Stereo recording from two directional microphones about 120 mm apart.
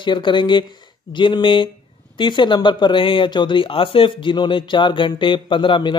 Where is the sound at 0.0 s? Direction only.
40° left (ahead or behind).